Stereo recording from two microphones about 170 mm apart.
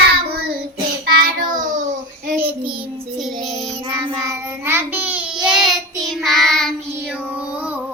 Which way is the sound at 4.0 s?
20° right (ahead or behind).